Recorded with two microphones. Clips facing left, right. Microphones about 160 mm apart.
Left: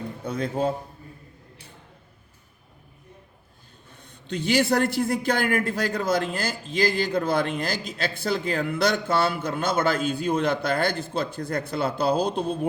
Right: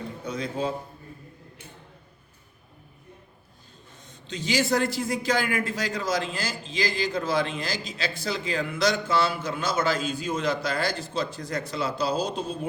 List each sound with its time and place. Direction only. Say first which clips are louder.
0.3 s a man's voice: left 4 dB; 55° left (ahead or behind)
3.9 s a man's voice: left 5 dB; 60° left (ahead or behind)